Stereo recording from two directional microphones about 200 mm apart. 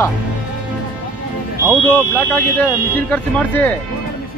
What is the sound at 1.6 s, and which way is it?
Speech, 10° right (ahead or behind).